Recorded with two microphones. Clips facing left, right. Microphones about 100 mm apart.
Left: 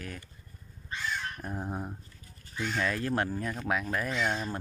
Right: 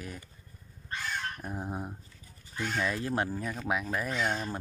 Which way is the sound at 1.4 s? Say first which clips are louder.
Left 1 dB; 5° right (ahead or behind).